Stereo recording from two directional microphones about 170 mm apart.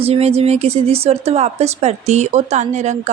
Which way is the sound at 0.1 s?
35° right (ahead or behind).